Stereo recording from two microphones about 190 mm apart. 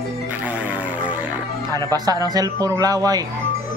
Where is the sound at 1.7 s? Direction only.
20° right (ahead or behind).